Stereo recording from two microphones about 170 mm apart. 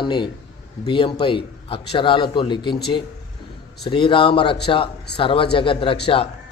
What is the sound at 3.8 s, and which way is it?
A man's voice, 30° left (ahead or behind).